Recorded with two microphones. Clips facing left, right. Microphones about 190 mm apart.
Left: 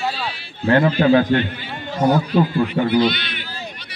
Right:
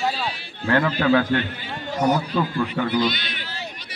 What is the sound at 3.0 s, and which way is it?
Speech, 40° right (ahead or behind).